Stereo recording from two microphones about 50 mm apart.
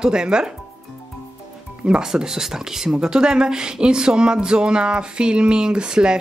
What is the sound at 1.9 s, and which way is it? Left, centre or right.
Speech, centre.